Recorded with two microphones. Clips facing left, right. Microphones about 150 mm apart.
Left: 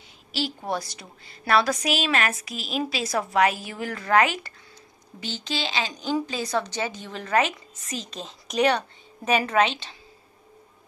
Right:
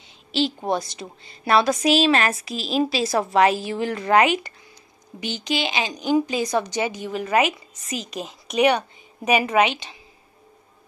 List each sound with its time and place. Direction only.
0.3 s a woman's voice: 25° right (ahead or behind)